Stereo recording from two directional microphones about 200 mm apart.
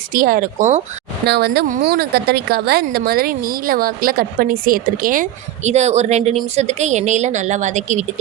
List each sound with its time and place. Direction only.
0.1 s speech: 45° right (ahead or behind)
1.3 s a woman's voice: 55° right (ahead or behind); by 8.0 s 35° right (ahead or behind)